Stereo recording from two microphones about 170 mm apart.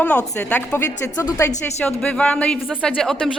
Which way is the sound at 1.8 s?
5° left (ahead or behind).